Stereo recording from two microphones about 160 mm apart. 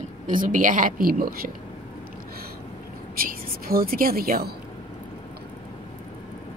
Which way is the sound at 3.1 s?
65° right (ahead or behind).